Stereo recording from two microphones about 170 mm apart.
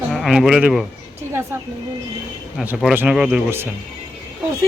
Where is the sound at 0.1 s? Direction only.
Centre (ahead or behind).